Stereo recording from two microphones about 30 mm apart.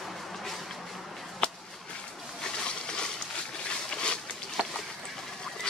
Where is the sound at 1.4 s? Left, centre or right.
Left.